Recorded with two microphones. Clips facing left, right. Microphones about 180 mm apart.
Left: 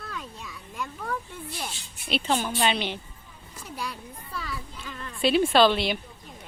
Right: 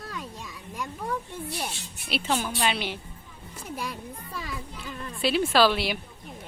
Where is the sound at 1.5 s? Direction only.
10° right (ahead or behind).